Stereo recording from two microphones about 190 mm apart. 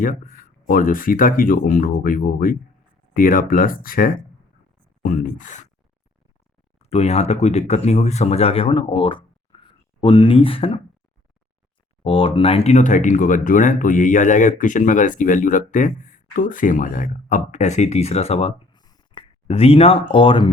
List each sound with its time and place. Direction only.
0.0 s speech: 45° left (ahead or behind)
6.7 s speech: 35° left (ahead or behind)
12.0 s speech: 30° left (ahead or behind)